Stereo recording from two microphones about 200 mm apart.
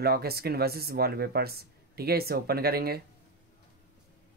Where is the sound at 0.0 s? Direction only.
50° right (ahead or behind).